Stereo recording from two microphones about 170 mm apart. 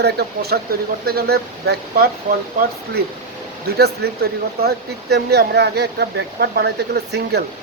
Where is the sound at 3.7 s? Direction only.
70° right (ahead or behind).